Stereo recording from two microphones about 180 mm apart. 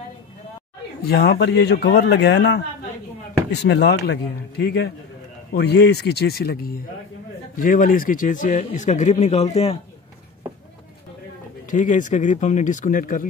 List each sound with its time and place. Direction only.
1.0 s a man's voice: 60° left (ahead or behind)
3.6 s a man's voice: 65° left (ahead or behind)
7.5 s speech: 50° left (ahead or behind)
11.7 s a man's voice: 45° left (ahead or behind)